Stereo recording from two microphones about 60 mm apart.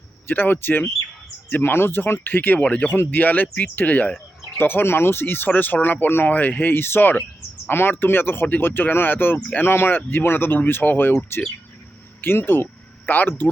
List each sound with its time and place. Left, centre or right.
0.3 s speech: left
2.6 s speech: left
2.9 s speech: left
12.2 s speech: left